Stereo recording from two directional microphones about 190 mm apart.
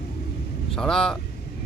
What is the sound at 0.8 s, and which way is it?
Speech, 5° left (ahead or behind).